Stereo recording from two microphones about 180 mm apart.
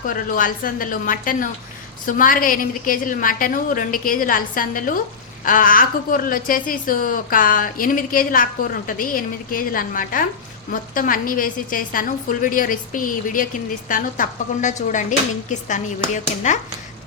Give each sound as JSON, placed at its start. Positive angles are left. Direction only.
{"t": 0.1, "sound": "a woman's voice", "side_deg": 50}